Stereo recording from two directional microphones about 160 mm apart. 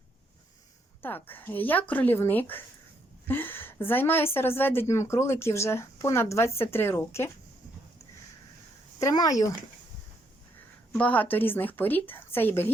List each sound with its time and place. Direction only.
1.0 s a woman's voice: 10° left (ahead or behind)
9.0 s speech: 20° left (ahead or behind)
10.9 s a woman's voice: 10° left (ahead or behind)